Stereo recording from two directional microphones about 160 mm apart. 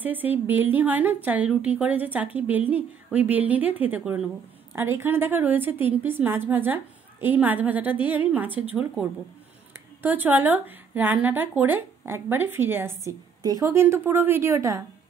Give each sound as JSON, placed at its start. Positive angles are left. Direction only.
{"t": 0.0, "sound": "speech", "side_deg": -10}
{"t": 10.0, "sound": "speech", "side_deg": -10}